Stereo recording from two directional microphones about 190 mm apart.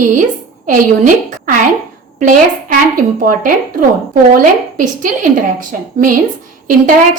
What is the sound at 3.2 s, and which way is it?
A woman's voice, 45° right (ahead or behind).